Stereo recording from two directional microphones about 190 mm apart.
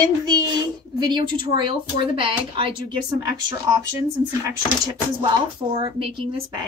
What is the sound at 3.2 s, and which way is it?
Speech, 15° right (ahead or behind).